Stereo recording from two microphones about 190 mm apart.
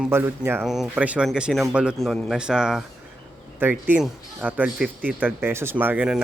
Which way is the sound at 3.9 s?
10° right (ahead or behind).